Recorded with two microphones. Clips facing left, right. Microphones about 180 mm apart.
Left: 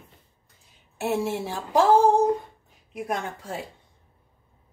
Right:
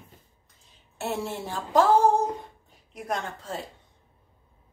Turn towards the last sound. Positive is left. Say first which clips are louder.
# left 1 dB
turn(degrees=10)  # may be behind; listen again after turning